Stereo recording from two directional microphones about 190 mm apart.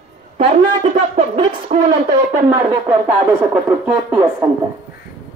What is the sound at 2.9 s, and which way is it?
A woman's voice, 5° right (ahead or behind).